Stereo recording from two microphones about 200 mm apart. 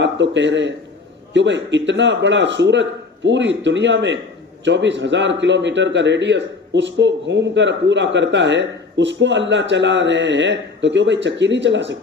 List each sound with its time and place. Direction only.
0.0 s a man's voice: 65° right (ahead or behind)